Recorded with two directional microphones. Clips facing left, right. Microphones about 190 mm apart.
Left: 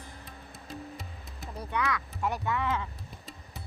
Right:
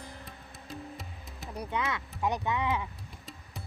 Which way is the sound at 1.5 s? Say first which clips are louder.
Left 1 dB; 20° right (ahead or behind).